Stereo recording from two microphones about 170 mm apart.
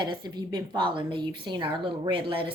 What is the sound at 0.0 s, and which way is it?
A woman's voice, 25° right (ahead or behind).